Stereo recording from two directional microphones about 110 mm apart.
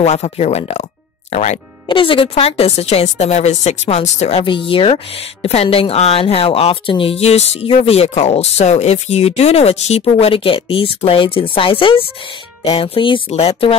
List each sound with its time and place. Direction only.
0.0 s speech: 75° left (ahead or behind)
1.3 s speech: 90° left
1.9 s speech: 50° left (ahead or behind); by 4.5 s 80° left
4.5 s speech: 50° left (ahead or behind); by 7.6 s 75° left (ahead or behind)
7.6 s speech: 60° left (ahead or behind)
13.3 s speech: 65° left (ahead or behind)